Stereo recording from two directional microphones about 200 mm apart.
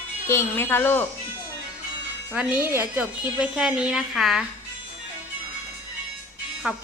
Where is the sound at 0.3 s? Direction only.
10° left (ahead or behind).